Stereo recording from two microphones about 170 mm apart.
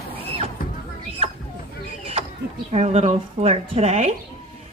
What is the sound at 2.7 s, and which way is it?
A woman's voice, 40° right (ahead or behind).